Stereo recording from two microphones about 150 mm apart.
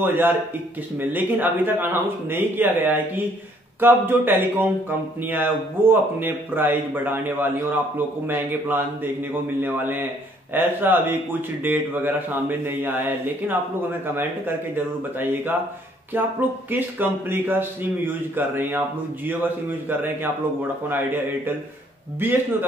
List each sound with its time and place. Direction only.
0.0 s speech: 15° right (ahead or behind)